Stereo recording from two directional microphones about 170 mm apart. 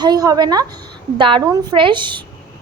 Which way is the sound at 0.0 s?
25° right (ahead or behind).